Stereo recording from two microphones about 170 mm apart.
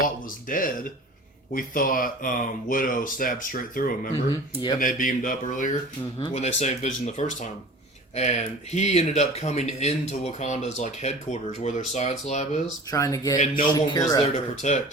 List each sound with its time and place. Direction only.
0.0 s speech: 55° left (ahead or behind)
4.3 s speech: 30° left (ahead or behind)
4.8 s speech: 55° left (ahead or behind)
6.1 s speech: 40° left (ahead or behind)
12.9 s speech: 20° left (ahead or behind)
13.4 s speech: 55° left (ahead or behind)
14.6 s speech: 45° left (ahead or behind)